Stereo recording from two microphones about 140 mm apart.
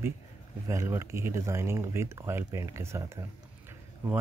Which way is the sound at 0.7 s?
20° right (ahead or behind).